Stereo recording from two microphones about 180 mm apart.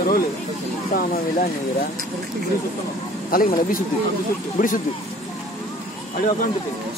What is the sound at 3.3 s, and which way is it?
Speech, 50° left (ahead or behind).